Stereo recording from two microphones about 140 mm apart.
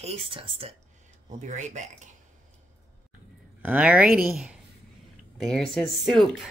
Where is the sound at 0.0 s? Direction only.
40° right (ahead or behind).